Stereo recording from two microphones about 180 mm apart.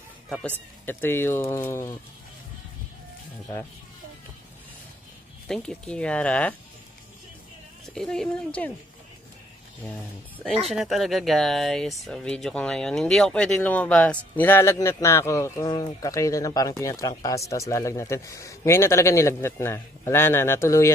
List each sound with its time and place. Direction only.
0.8 s speech: 10° left (ahead or behind)
5.5 s speech: 5° left (ahead or behind)
7.9 s speech: 5° left (ahead or behind)
10.7 s speech: centre (ahead or behind); by 20.9 s 15° left (ahead or behind)